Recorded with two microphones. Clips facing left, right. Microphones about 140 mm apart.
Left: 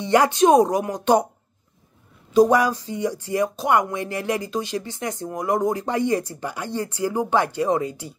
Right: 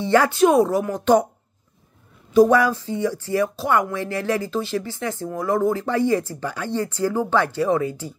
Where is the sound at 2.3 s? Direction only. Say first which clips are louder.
Right 1 dB; 15° left (ahead or behind).